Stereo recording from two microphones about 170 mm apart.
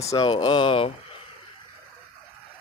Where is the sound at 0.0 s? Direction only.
20° left (ahead or behind).